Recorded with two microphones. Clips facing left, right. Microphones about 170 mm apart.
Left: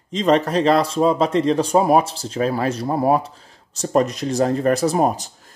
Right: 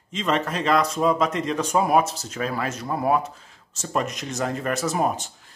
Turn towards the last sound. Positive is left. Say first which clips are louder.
# left 5 dB
turn(degrees=35)  # may be behind; listen again after turning